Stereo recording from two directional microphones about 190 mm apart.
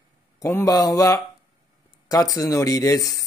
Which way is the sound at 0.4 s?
15° left (ahead or behind).